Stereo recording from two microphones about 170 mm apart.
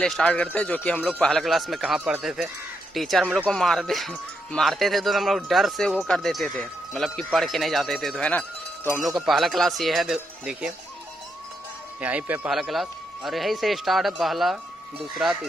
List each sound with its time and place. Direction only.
0.0 s speech: 5° left (ahead or behind)
9.0 s speech: centre (ahead or behind)
12.0 s speech: 10° right (ahead or behind)